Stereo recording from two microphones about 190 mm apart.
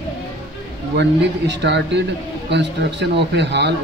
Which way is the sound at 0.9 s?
65° right (ahead or behind).